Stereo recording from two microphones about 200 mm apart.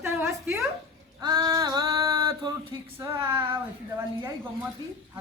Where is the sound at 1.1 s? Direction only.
20° right (ahead or behind).